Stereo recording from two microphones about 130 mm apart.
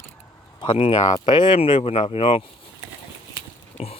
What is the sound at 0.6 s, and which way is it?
Speech, 40° left (ahead or behind).